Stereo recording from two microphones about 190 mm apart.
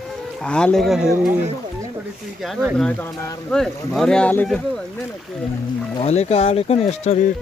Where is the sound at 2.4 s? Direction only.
Centre (ahead or behind).